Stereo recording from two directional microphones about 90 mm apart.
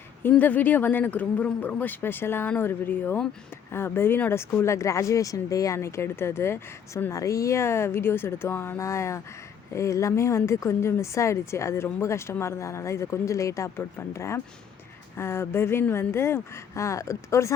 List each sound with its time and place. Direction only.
0.2 s speech: 20° left (ahead or behind)